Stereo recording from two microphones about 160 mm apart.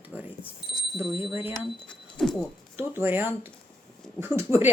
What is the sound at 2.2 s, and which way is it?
Speech, 5° left (ahead or behind).